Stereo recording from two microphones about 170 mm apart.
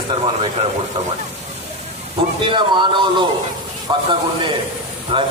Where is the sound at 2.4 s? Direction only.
25° right (ahead or behind).